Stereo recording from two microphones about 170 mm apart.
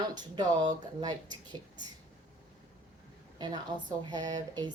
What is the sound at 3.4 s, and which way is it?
A woman's voice, 25° right (ahead or behind).